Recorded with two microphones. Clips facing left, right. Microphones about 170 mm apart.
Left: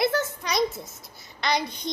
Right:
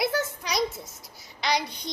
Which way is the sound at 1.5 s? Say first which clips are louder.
Left 1 dB; 50° left (ahead or behind).